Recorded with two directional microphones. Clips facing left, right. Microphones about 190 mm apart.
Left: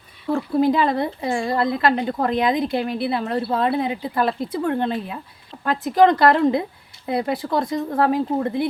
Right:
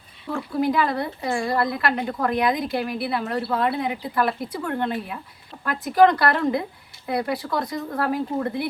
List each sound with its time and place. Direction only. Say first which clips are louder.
0.6 s a woman's voice: left 2 dB; 25° left (ahead or behind)